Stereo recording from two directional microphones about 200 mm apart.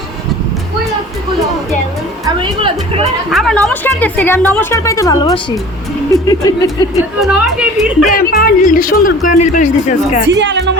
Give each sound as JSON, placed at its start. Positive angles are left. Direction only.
{"t": 2.2, "sound": "music", "side_deg": -25}
{"t": 3.2, "sound": "a woman's voice", "side_deg": 0}
{"t": 7.2, "sound": "a woman's voice", "side_deg": 0}
{"t": 8.1, "sound": "speech", "side_deg": 45}
{"t": 10.2, "sound": "speech", "side_deg": -65}